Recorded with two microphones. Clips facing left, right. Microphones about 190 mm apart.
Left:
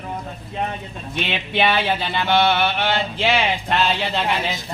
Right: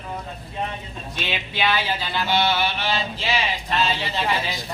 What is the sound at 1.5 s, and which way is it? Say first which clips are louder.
Chant: left 5 dB; 60° left (ahead or behind).